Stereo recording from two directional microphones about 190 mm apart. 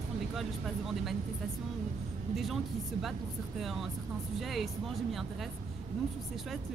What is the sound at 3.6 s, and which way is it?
Speech, centre (ahead or behind).